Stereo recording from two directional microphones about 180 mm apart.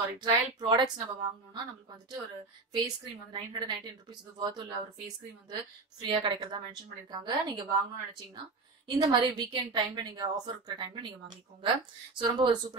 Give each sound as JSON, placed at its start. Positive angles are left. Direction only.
{"t": 0.2, "sound": "a woman's voice", "side_deg": -25}
{"t": 3.3, "sound": "a woman's voice", "side_deg": -25}
{"t": 8.8, "sound": "a woman's voice", "side_deg": -25}